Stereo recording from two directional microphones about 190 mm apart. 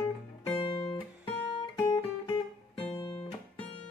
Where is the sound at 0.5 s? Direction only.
25° left (ahead or behind).